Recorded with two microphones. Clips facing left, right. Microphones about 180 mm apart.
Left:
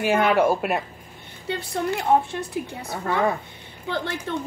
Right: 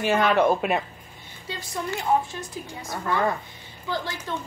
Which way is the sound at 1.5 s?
60° left (ahead or behind).